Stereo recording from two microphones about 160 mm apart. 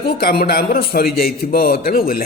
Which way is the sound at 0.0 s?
90° left.